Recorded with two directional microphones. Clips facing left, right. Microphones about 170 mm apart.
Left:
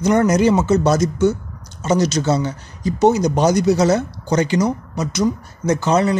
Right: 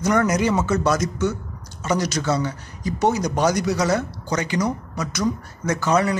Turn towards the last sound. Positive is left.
turn(degrees=25)  # may be behind; listen again after turning